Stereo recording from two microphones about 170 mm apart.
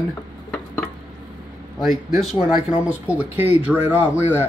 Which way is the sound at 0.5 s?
10° left (ahead or behind).